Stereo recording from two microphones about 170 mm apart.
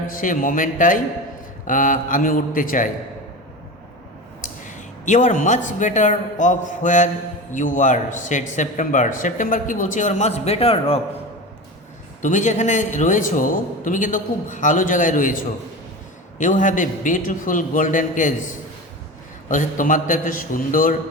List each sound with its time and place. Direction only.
0.1 s a man's voice: 50° left (ahead or behind)
4.4 s a man's voice: 50° left (ahead or behind)
12.2 s a man's voice: 45° left (ahead or behind)
19.5 s a man's voice: 50° left (ahead or behind)